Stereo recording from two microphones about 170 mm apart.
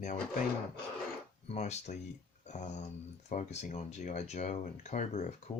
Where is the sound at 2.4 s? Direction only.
45° left (ahead or behind).